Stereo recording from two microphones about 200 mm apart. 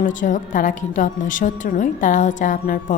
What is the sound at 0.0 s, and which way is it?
A woman's voice, 40° left (ahead or behind).